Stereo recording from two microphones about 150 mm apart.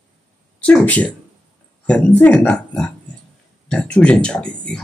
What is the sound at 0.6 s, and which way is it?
Speech, 10° left (ahead or behind).